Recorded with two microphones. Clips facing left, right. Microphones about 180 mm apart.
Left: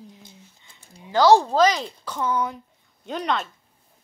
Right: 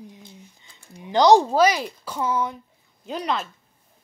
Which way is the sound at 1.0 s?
20° right (ahead or behind).